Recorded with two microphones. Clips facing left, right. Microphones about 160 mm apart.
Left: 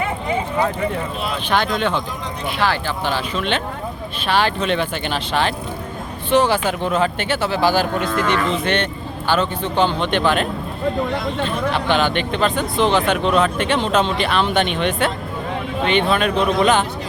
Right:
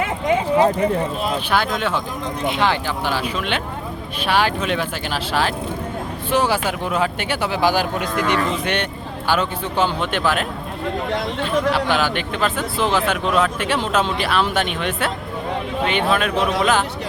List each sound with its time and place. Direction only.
1.5 s speech: 5° right (ahead or behind)
2.5 s speech: 20° right (ahead or behind)
11.4 s speech: 5° right (ahead or behind)